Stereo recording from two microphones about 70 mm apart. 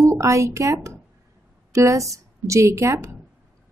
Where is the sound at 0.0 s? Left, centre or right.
Right.